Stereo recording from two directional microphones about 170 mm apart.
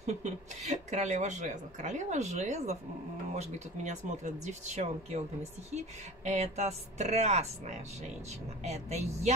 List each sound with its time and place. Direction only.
0.0 s speech: 45° right (ahead or behind)